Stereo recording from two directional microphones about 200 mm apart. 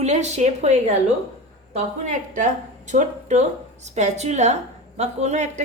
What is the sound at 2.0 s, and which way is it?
A woman's voice, 40° right (ahead or behind).